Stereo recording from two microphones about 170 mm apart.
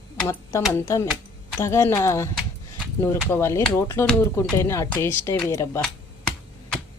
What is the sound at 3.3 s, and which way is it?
Speech, 15° left (ahead or behind).